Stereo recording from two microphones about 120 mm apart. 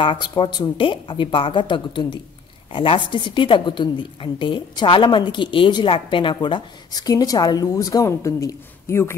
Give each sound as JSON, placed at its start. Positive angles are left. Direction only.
{"t": 0.0, "sound": "a woman's voice", "side_deg": 40}